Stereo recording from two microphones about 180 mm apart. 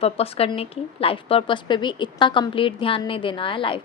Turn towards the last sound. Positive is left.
turn(degrees=30)  # may be behind; listen again after turning